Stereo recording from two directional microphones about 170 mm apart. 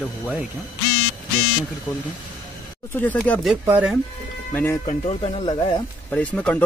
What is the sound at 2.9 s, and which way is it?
Speech, 10° left (ahead or behind).